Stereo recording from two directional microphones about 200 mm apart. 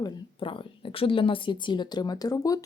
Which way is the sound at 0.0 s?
25° left (ahead or behind).